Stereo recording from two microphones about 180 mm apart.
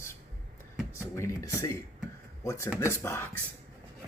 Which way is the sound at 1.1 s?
15° left (ahead or behind).